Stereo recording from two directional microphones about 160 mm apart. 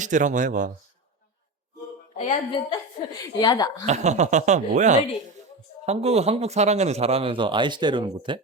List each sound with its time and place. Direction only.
0.0 s speech: 50° right (ahead or behind)
2.1 s a woman's voice: 35° left (ahead or behind)
3.3 s speech: 25° left (ahead or behind)
3.8 s a man's voice: 45° right (ahead or behind); by 8.4 s 30° right (ahead or behind)